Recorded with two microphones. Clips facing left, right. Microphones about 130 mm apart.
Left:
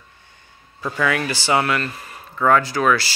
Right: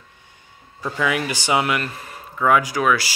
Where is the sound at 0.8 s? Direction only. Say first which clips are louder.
Left 1 dB; 10° right (ahead or behind).